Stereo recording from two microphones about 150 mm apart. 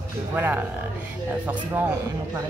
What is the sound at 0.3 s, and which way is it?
Speech, 10° right (ahead or behind).